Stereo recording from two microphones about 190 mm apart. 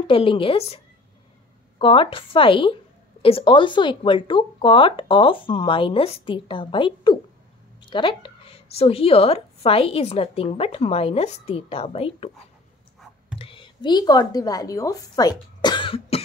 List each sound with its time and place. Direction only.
0.0 s a woman's voice: 30° left (ahead or behind)
13.4 s a woman's voice: 25° left (ahead or behind)